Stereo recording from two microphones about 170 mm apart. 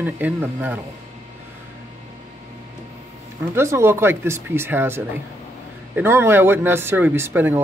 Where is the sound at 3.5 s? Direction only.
15° right (ahead or behind).